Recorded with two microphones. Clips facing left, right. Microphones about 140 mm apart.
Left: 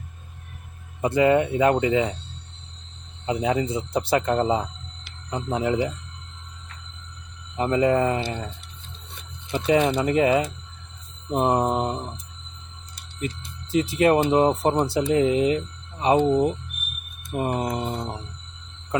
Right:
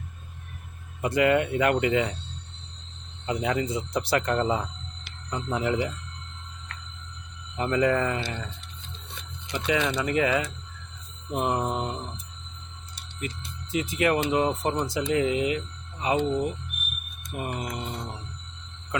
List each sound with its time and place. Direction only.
1.0 s speech: 25° left (ahead or behind)
3.4 s speech: 25° left (ahead or behind)
7.5 s speech: 25° left (ahead or behind)
9.6 s speech: 35° left (ahead or behind)